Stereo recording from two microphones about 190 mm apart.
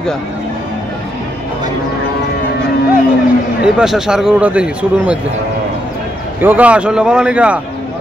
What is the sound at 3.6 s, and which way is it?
Speech, 5° right (ahead or behind).